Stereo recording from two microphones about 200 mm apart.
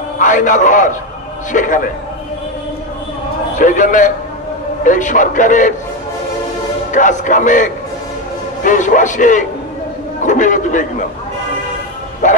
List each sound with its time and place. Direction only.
0.2 s a man's voice: 40° left (ahead or behind)
3.5 s a man's voice: 40° left (ahead or behind)
6.9 s a man's voice: 40° left (ahead or behind)
12.2 s a man's voice: 40° left (ahead or behind)